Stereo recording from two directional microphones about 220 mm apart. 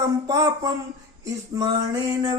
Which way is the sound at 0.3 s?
15° right (ahead or behind).